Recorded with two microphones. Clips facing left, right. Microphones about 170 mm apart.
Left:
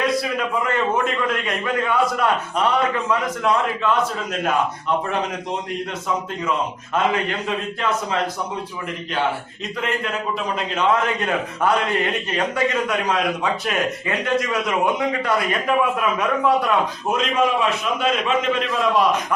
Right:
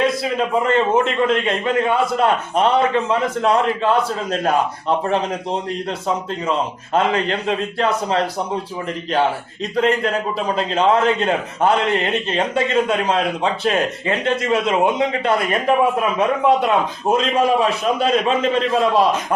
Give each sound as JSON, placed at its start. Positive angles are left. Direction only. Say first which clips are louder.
{"t": 0.0, "sound": "a man's voice", "louder": "right 3 dB", "side_deg": -30}
{"t": 6.9, "sound": "a man's voice", "louder": "right 3 dB", "side_deg": -30}
{"t": 9.7, "sound": "a man's voice", "louder": "right 7 dB", "side_deg": -35}